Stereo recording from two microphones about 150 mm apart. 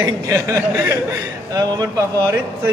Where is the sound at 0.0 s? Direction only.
20° right (ahead or behind).